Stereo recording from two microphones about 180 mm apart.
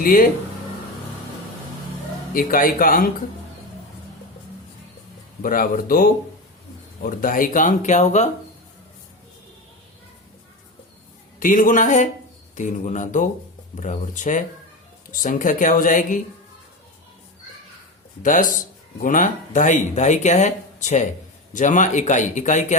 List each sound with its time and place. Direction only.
0.0 s speech: 50° left (ahead or behind)
2.3 s speech: 50° left (ahead or behind)
5.4 s speech: 50° left (ahead or behind)
11.3 s speech: 50° left (ahead or behind)
18.2 s speech: 45° left (ahead or behind)